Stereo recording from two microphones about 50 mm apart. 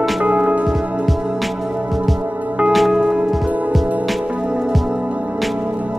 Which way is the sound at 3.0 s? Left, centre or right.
Centre.